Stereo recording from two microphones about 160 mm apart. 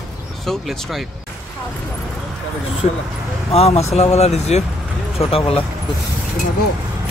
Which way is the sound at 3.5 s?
40° left (ahead or behind).